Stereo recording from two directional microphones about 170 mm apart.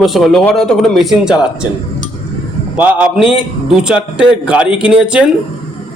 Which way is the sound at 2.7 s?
10° right (ahead or behind).